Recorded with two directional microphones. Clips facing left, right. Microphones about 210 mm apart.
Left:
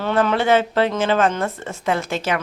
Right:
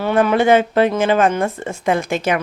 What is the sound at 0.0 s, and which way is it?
A woman's voice, 10° right (ahead or behind).